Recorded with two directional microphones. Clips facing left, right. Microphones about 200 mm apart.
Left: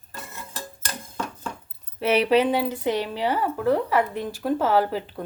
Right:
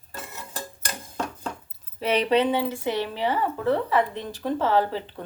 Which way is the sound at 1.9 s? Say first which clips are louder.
Left 2 dB; 5° left (ahead or behind).